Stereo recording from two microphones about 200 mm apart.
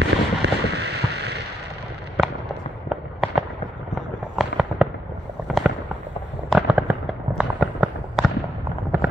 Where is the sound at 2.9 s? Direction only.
5° right (ahead or behind).